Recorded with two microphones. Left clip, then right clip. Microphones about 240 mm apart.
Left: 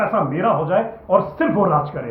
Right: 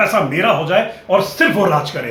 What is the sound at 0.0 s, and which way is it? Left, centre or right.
Speech, right.